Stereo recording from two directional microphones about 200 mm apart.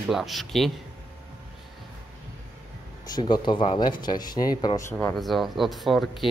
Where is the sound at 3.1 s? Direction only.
20° left (ahead or behind).